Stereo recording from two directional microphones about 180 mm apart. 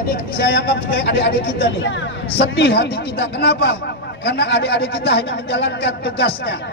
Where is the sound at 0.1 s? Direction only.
65° left (ahead or behind).